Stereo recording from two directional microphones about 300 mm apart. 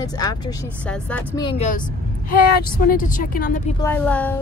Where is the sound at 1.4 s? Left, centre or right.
Centre.